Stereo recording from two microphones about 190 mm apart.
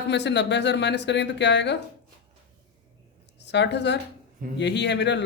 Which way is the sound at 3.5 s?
65° left (ahead or behind).